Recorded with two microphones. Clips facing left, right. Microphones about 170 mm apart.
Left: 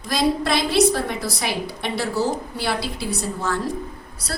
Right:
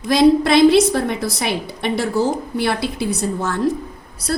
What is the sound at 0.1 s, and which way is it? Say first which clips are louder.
A woman's voice: right 8 dB; 60° right (ahead or behind).